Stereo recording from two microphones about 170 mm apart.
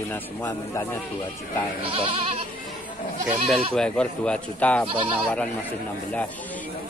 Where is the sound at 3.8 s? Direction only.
5° left (ahead or behind).